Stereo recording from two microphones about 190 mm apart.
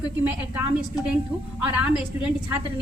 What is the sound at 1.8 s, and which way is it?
Speech, 5° right (ahead or behind).